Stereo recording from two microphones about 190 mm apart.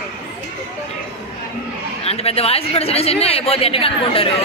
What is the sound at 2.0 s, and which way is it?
Speech, 30° left (ahead or behind).